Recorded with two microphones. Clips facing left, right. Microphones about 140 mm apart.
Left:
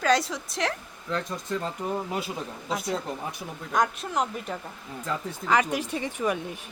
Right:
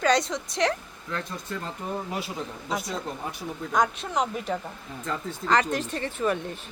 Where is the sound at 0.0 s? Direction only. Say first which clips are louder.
Right 1 dB; 5° left (ahead or behind).